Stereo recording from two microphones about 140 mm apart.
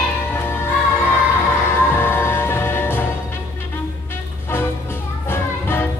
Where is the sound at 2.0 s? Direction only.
15° left (ahead or behind).